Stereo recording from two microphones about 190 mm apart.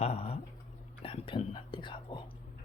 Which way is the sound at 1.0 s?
30° left (ahead or behind).